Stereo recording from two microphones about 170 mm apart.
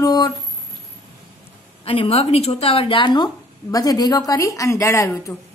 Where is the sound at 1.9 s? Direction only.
35° left (ahead or behind).